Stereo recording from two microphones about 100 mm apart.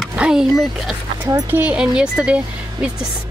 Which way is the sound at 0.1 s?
10° right (ahead or behind).